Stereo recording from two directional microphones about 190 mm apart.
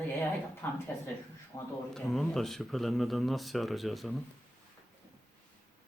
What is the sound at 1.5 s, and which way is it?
Speech, 25° left (ahead or behind).